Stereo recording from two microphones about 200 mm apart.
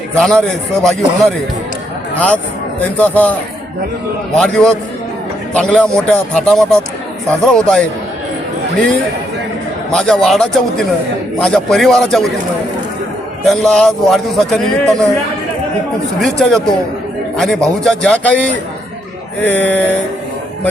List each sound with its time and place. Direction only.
0.1 s speech: 5° left (ahead or behind)
4.4 s speech: 5° left (ahead or behind)
9.9 s speech: 5° left (ahead or behind)
13.5 s speech: 5° left (ahead or behind)
16.2 s speech: centre (ahead or behind)
19.4 s speech: 5° left (ahead or behind)